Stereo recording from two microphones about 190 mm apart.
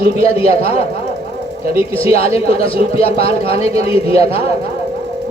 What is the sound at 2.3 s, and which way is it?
A man's voice, 30° left (ahead or behind).